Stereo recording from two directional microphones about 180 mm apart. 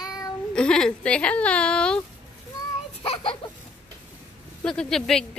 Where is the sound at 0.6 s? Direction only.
5° left (ahead or behind).